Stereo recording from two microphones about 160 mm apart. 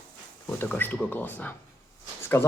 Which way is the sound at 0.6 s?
10° left (ahead or behind).